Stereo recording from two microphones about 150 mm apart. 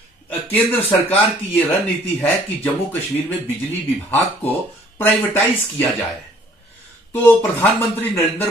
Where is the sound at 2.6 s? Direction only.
10° left (ahead or behind).